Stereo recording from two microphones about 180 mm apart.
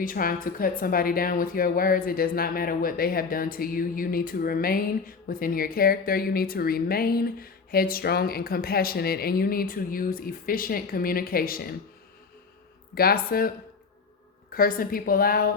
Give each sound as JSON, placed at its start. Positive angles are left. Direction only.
{"t": 0.0, "sound": "a woman's voice", "side_deg": 50}
{"t": 12.9, "sound": "a woman's voice", "side_deg": 55}
{"t": 14.5, "sound": "a woman's voice", "side_deg": 55}